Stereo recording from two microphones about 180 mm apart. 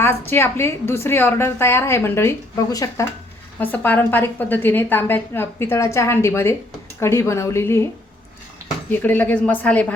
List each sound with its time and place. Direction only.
0.3 s a woman's voice: 15° left (ahead or behind)
8.9 s a woman's voice: 10° left (ahead or behind)